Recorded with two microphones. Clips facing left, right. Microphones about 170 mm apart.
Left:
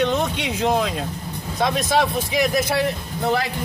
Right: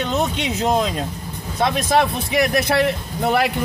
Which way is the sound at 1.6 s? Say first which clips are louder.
Right 2 dB; 60° right (ahead or behind).